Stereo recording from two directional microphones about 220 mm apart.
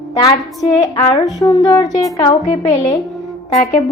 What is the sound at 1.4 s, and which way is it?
Speech, 15° left (ahead or behind).